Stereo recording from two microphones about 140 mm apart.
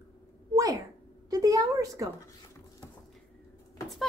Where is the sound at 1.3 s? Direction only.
25° right (ahead or behind).